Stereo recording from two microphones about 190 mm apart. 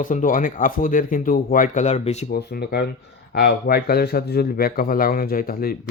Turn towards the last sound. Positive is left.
turn(degrees=50)  # may be behind; listen again after turning